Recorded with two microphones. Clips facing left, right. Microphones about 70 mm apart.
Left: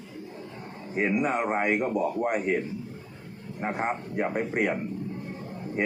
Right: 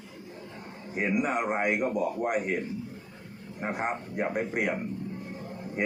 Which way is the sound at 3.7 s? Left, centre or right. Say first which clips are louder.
Left 2 dB; centre.